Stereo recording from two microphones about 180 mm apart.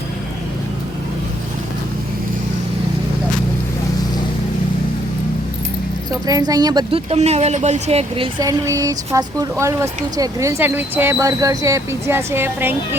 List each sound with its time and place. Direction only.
6.1 s speech: 20° right (ahead or behind)
8.4 s speech: 15° right (ahead or behind)